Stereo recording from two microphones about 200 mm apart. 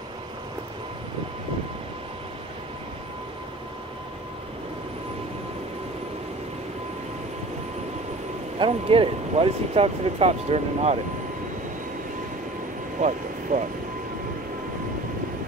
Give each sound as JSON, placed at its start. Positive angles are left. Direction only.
{"t": 8.5, "sound": "speech", "side_deg": -25}
{"t": 13.0, "sound": "speech", "side_deg": -35}